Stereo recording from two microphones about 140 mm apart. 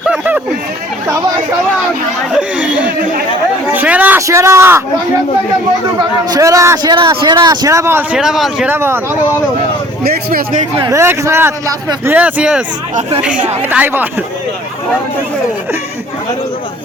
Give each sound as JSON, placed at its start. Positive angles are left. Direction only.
{"t": 0.0, "sound": "a sound", "side_deg": -10}
{"t": 2.3, "sound": "chatter", "side_deg": -10}
{"t": 3.7, "sound": "a sound", "side_deg": -10}
{"t": 4.3, "sound": "a man's voice", "side_deg": -20}
{"t": 6.0, "sound": "a man's voice", "side_deg": -25}
{"t": 6.9, "sound": "a man's voice", "side_deg": -35}
{"t": 8.1, "sound": "speech", "side_deg": -5}
{"t": 8.7, "sound": "speech", "side_deg": -15}
{"t": 10.0, "sound": "speech", "side_deg": -90}
{"t": 10.8, "sound": "a man's voice", "side_deg": -20}
{"t": 13.0, "sound": "speech", "side_deg": -45}
{"t": 13.2, "sound": "speech", "side_deg": -10}